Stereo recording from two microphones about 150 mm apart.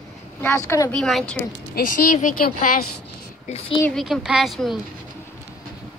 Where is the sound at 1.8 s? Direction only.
65° left (ahead or behind).